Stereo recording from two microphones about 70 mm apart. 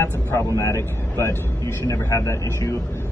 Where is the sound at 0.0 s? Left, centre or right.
Left.